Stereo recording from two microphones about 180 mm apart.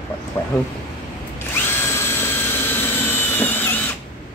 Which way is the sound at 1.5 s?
10° left (ahead or behind).